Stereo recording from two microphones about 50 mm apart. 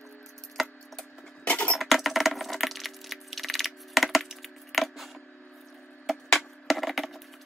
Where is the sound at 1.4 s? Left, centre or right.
Left.